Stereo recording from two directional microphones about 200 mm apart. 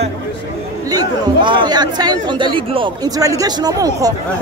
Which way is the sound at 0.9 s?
20° right (ahead or behind).